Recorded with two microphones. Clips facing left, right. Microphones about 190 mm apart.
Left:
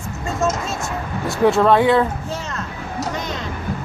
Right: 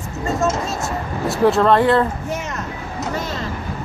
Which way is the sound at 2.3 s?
20° right (ahead or behind).